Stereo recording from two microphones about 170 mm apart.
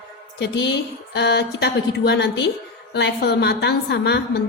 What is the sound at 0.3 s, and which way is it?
A woman's voice, 90° left.